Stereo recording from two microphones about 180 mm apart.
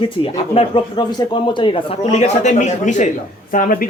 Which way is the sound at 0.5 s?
30° left (ahead or behind).